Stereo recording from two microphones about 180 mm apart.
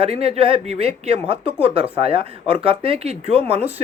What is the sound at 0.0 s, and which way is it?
Speech, 35° right (ahead or behind).